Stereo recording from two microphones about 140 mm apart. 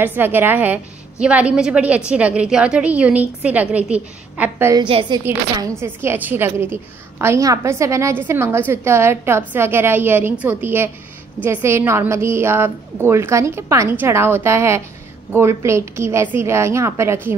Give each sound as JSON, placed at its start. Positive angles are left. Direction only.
{"t": 0.0, "sound": "a woman's voice", "side_deg": -15}
{"t": 4.7, "sound": "a woman's voice", "side_deg": -35}
{"t": 5.6, "sound": "a woman's voice", "side_deg": -20}